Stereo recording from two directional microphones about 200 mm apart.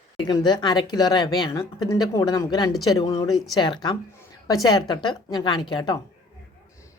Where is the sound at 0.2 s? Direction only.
20° left (ahead or behind).